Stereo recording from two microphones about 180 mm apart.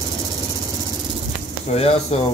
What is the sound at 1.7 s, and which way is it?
Speech, 35° left (ahead or behind).